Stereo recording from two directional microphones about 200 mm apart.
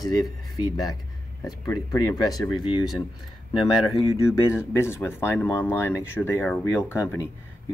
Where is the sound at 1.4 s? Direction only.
20° left (ahead or behind).